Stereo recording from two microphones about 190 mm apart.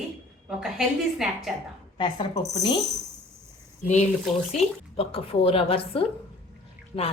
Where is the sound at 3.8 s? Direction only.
35° left (ahead or behind).